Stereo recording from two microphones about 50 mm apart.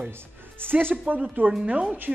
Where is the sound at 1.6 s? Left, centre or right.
Right.